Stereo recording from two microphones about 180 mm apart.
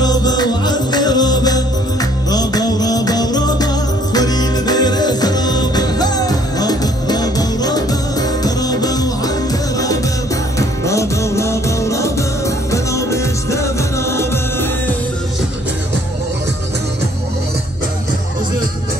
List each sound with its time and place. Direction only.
0.0 s music: 20° left (ahead or behind)
10.9 s music: 15° left (ahead or behind)